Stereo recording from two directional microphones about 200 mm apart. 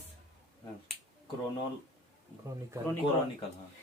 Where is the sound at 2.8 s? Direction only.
15° right (ahead or behind).